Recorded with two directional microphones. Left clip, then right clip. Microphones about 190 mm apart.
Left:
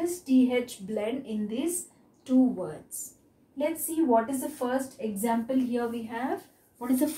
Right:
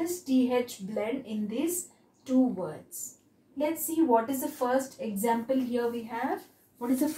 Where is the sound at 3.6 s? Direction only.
Centre (ahead or behind).